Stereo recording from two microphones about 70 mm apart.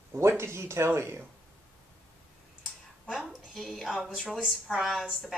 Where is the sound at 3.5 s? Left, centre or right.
Centre.